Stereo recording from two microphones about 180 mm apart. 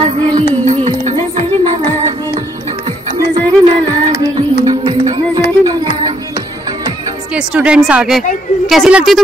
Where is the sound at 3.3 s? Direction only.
30° right (ahead or behind).